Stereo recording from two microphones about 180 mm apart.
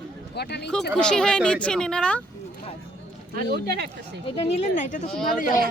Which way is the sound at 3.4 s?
60° right (ahead or behind).